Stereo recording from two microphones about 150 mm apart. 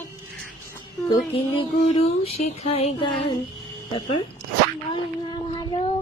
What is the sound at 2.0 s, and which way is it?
Speech, 40° left (ahead or behind).